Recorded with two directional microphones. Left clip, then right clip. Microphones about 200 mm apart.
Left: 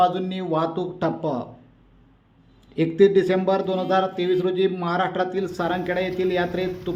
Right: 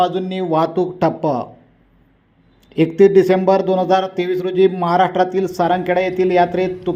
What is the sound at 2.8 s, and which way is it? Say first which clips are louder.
Speech: right 6 dB; 20° right (ahead or behind).